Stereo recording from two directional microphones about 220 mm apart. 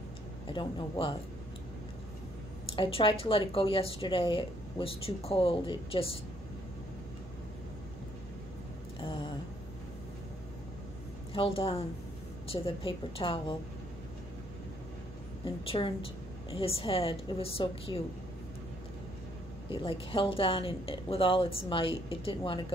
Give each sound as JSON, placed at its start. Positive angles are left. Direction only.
{"t": 0.5, "sound": "speech", "side_deg": 20}
{"t": 2.7, "sound": "speech", "side_deg": 25}
{"t": 9.0, "sound": "a sound", "side_deg": 20}
{"t": 11.3, "sound": "speech", "side_deg": 25}
{"t": 15.4, "sound": "speech", "side_deg": 25}
{"t": 19.7, "sound": "speech", "side_deg": 25}